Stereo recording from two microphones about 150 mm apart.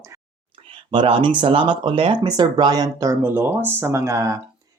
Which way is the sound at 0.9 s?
35° right (ahead or behind).